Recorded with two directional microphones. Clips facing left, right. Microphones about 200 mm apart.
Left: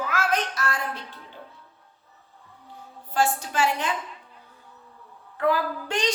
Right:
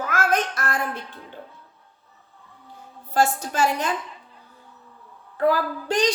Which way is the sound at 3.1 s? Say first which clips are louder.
Right 3 dB; 40° right (ahead or behind).